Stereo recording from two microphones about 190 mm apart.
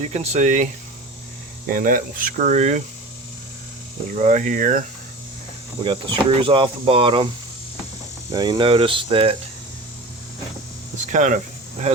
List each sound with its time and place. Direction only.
0.0 s speech: 35° right (ahead or behind)
4.1 s speech: 40° right (ahead or behind)
5.8 s speech: 25° right (ahead or behind)
8.3 s speech: 20° right (ahead or behind)
10.9 s cricket: 40° right (ahead or behind)